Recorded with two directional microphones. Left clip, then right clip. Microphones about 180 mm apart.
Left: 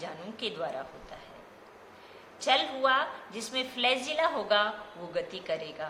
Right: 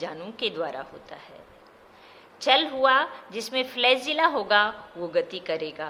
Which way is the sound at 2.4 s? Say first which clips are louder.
Right 6 dB; 60° right (ahead or behind).